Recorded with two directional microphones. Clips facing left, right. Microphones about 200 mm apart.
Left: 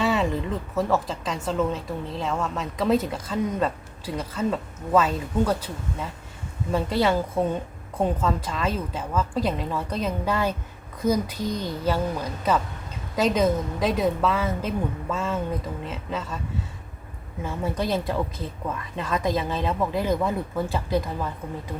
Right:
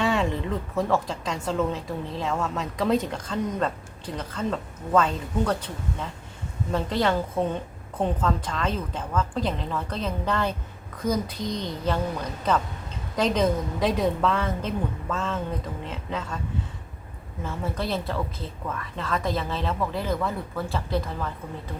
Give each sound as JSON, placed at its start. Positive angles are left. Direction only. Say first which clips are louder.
{"t": 0.0, "sound": "a woman's voice", "louder": "left 1 dB", "side_deg": 0}
{"t": 17.4, "sound": "speech", "louder": "left 3 dB", "side_deg": 15}